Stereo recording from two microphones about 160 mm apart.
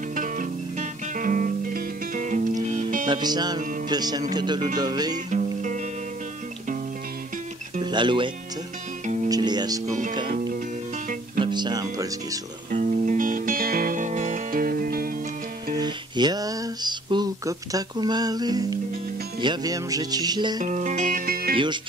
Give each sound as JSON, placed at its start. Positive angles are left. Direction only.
{"t": 0.1, "sound": "music", "side_deg": -55}
{"t": 3.1, "sound": "speech", "side_deg": -25}
{"t": 5.3, "sound": "music", "side_deg": -50}
{"t": 7.8, "sound": "speech", "side_deg": -30}
{"t": 9.0, "sound": "music", "side_deg": -50}
{"t": 9.3, "sound": "music", "side_deg": -25}
{"t": 10.2, "sound": "music", "side_deg": -65}
{"t": 11.3, "sound": "speech", "side_deg": -30}
{"t": 12.7, "sound": "music", "side_deg": -55}
{"t": 15.7, "sound": "music", "side_deg": -25}
{"t": 19.4, "sound": "speech", "side_deg": -25}
{"t": 20.6, "sound": "music", "side_deg": -50}